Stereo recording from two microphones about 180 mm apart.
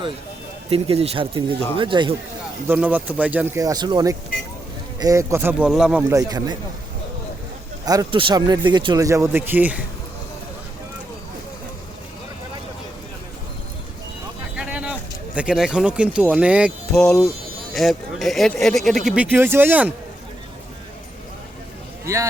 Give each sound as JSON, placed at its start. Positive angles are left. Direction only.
{"t": 0.7, "sound": "speech", "side_deg": -35}
{"t": 2.6, "sound": "speech", "side_deg": -10}
{"t": 7.9, "sound": "speech", "side_deg": -25}
{"t": 14.5, "sound": "a sound", "side_deg": -5}
{"t": 15.4, "sound": "speech", "side_deg": -5}
{"t": 22.0, "sound": "speech", "side_deg": -15}